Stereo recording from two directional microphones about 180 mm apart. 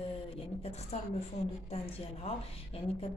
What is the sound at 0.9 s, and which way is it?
Speech, 40° left (ahead or behind).